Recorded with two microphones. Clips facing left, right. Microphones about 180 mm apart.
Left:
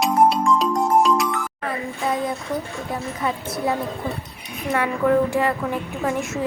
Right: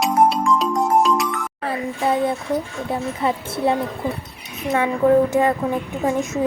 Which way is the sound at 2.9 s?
30° right (ahead or behind).